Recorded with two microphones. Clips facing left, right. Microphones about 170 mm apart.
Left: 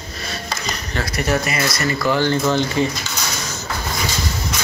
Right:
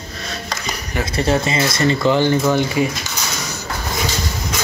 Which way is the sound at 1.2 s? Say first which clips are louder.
Right 3 dB; 25° right (ahead or behind).